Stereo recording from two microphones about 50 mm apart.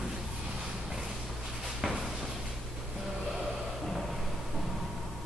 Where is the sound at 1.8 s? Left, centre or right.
Centre.